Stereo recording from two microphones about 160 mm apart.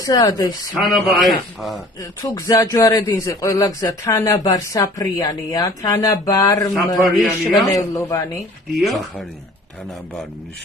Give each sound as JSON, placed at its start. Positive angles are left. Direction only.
{"t": 0.0, "sound": "speech", "side_deg": 20}
{"t": 0.8, "sound": "a man's voice", "side_deg": 0}
{"t": 2.0, "sound": "speech", "side_deg": 20}
{"t": 7.2, "sound": "a man's voice", "side_deg": 0}
{"t": 7.7, "sound": "speech", "side_deg": 20}
{"t": 8.8, "sound": "a man's voice", "side_deg": 0}